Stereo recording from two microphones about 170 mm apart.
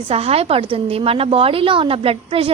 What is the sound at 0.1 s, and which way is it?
A woman's voice, 35° right (ahead or behind).